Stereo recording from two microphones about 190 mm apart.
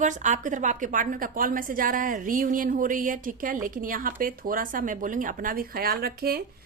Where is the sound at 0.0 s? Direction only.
40° right (ahead or behind).